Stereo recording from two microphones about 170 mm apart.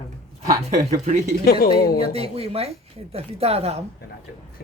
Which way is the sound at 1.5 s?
60° left (ahead or behind).